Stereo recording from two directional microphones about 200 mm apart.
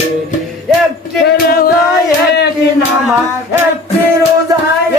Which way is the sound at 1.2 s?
50° left (ahead or behind).